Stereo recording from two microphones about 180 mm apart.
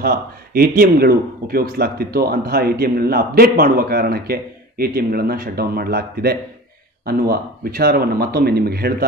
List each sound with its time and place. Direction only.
0.0 s a man's voice: 55° right (ahead or behind)